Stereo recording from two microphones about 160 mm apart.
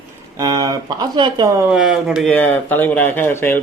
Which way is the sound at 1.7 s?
5° right (ahead or behind).